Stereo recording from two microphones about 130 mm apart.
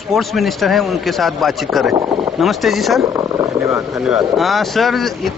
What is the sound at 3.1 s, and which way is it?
Speech, 20° right (ahead or behind).